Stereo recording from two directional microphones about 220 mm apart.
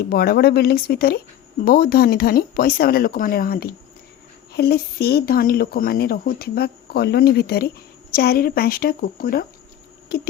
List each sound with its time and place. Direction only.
0.0 s a woman's voice: 45° left (ahead or behind)